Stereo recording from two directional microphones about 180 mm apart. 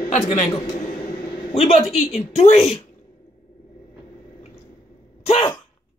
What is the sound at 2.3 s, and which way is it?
Speech, 35° left (ahead or behind).